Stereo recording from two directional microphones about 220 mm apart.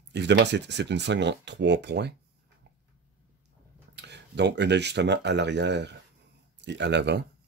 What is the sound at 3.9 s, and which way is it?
Speech, 50° right (ahead or behind).